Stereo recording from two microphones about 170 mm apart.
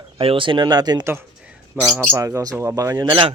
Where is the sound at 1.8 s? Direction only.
Centre (ahead or behind).